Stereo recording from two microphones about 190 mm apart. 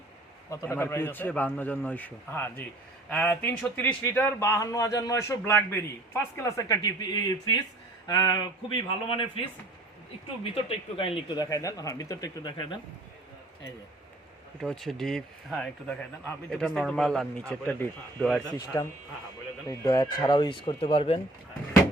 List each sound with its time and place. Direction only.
0.5 s a man's voice: 15° left (ahead or behind); by 9.4 s 30° left (ahead or behind)
10.9 s speech: 30° left (ahead or behind)
14.6 s speech: centre (ahead or behind)
18.4 s speech: 20° left (ahead or behind)